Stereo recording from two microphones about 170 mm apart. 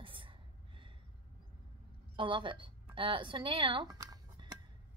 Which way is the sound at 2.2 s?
30° right (ahead or behind).